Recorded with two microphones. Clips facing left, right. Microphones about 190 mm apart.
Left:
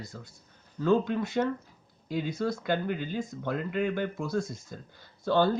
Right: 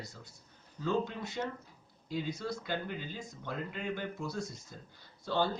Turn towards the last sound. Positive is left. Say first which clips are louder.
# left 8 dB
turn(degrees=55)  # may be behind; listen again after turning